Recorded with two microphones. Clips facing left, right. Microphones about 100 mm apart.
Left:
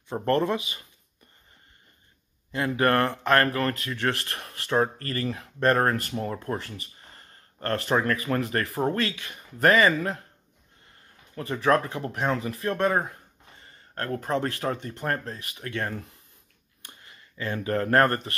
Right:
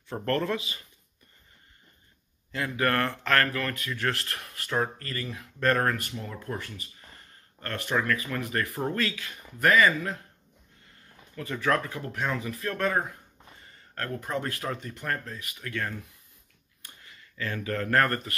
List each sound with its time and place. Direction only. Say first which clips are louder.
0.1 s speech: left 4 dB; 20° left (ahead or behind)
2.5 s speech: left 4 dB; 30° left (ahead or behind)
11.3 s speech: left 4 dB; 30° left (ahead or behind)